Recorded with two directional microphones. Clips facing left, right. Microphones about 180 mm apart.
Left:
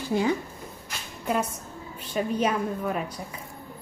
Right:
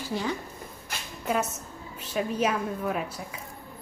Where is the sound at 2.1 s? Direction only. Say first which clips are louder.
Left 1 dB; 5° right (ahead or behind).